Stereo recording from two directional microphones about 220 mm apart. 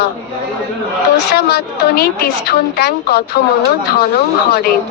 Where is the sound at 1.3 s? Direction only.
45° left (ahead or behind).